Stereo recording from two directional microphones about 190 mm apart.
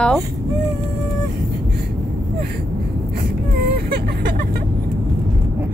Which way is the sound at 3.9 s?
55° right (ahead or behind).